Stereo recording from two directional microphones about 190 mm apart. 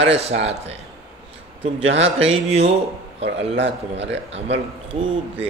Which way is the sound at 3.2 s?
70° right (ahead or behind).